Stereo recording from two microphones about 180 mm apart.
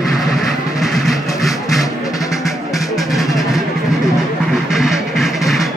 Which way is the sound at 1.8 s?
20° left (ahead or behind).